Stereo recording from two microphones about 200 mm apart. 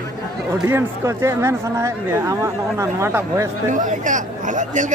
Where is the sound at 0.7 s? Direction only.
15° right (ahead or behind).